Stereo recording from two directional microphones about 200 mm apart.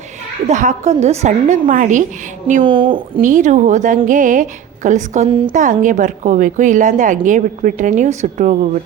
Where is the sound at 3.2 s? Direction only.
40° right (ahead or behind).